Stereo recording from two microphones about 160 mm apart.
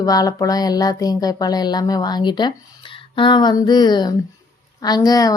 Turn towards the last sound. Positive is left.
turn(degrees=25)  # may be behind; listen again after turning